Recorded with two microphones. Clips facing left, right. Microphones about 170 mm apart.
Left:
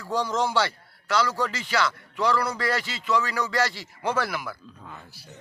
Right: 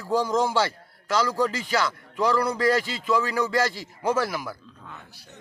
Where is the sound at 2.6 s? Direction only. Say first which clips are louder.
Right 6 dB; 45° right (ahead or behind).